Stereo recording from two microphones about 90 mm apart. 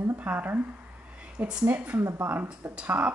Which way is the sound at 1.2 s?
10° right (ahead or behind).